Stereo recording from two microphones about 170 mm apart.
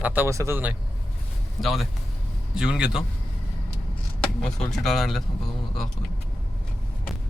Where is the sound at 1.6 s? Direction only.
Centre (ahead or behind).